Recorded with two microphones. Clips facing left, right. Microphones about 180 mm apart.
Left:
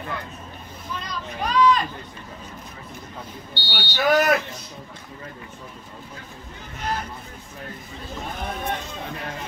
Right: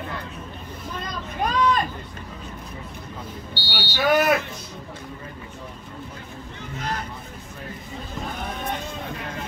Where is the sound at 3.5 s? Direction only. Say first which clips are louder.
Even; 10° right (ahead or behind).